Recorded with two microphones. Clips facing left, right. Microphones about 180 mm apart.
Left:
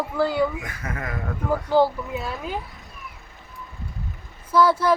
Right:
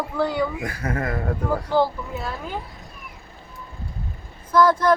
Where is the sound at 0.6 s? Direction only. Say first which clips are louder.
Right 6 dB; 35° right (ahead or behind).